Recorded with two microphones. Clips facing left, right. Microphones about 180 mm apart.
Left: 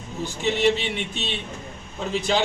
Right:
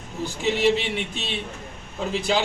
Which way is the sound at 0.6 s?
5° right (ahead or behind).